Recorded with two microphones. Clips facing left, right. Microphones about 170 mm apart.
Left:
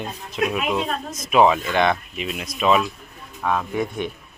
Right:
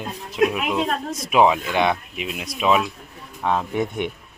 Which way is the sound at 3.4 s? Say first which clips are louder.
Right 1 dB; 20° right (ahead or behind).